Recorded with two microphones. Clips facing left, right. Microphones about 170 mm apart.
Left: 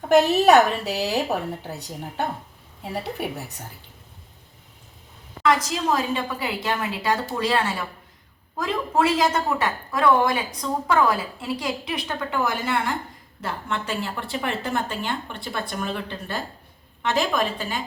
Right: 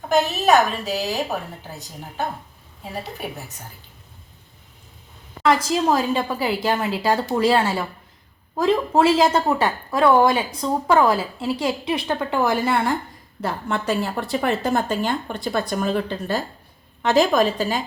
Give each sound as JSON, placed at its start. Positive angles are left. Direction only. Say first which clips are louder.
{"t": 0.1, "sound": "a woman's voice", "louder": "left 2 dB", "side_deg": 65}
{"t": 5.4, "sound": "a woman's voice", "louder": "right 3 dB", "side_deg": -30}